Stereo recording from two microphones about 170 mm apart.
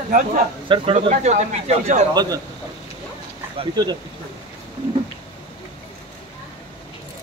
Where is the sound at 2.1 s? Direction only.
20° right (ahead or behind).